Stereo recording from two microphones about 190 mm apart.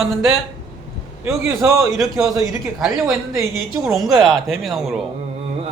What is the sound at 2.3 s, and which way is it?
Speech, 20° right (ahead or behind).